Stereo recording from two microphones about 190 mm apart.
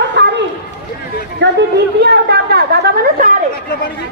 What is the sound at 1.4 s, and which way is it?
A woman's voice, 65° right (ahead or behind).